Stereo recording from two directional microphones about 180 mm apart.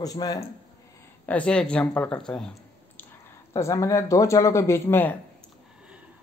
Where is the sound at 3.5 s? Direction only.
15° left (ahead or behind).